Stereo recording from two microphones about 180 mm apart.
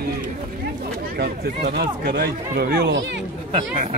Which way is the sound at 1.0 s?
60° right (ahead or behind).